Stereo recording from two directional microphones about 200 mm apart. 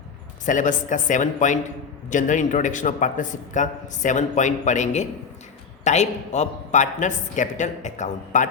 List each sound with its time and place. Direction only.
0.4 s a man's voice: 40° left (ahead or behind)